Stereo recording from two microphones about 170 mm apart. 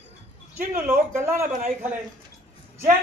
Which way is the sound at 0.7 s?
15° right (ahead or behind).